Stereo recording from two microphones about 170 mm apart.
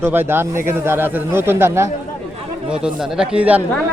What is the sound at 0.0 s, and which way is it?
Speech, 10° right (ahead or behind).